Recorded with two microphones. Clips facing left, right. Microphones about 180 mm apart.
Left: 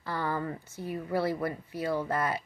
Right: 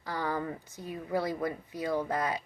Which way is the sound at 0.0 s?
15° right (ahead or behind).